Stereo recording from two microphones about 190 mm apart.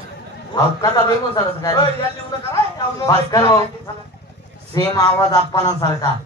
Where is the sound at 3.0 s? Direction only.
15° left (ahead or behind).